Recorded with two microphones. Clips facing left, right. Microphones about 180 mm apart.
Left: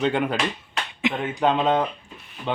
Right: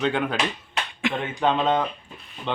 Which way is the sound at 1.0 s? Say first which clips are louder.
Left 1 dB; 20° left (ahead or behind).